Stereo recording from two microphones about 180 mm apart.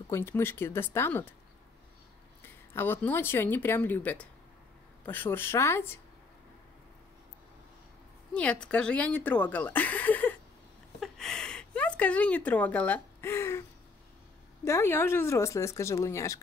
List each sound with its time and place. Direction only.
0.1 s speech: 10° left (ahead or behind)
2.4 s speech: 10° left (ahead or behind)
8.3 s speech: 5° left (ahead or behind)
11.0 s a sound: 5° left (ahead or behind)
14.6 s speech: 15° left (ahead or behind)